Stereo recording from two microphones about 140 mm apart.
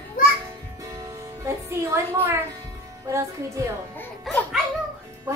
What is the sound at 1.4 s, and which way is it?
Music, 20° right (ahead or behind).